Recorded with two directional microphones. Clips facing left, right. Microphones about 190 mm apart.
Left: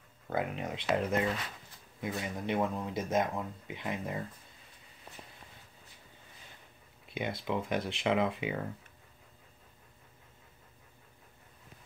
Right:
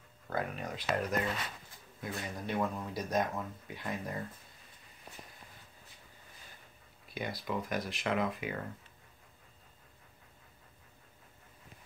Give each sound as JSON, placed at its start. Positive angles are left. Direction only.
{"t": 0.3, "sound": "speech", "side_deg": 20}
{"t": 7.2, "sound": "speech", "side_deg": 20}